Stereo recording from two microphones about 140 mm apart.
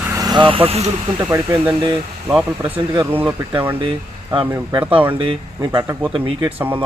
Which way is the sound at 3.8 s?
40° right (ahead or behind).